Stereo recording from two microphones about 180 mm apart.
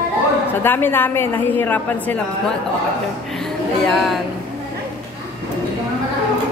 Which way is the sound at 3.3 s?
5° left (ahead or behind).